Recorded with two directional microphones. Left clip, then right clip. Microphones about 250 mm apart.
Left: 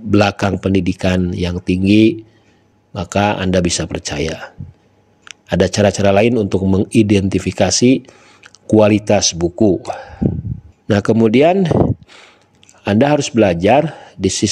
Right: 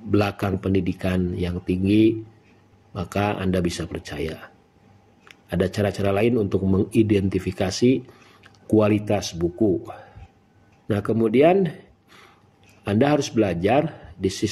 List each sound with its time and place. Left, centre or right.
0.1 s speech: left